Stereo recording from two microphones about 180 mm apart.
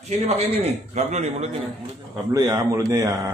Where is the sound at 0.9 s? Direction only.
40° right (ahead or behind).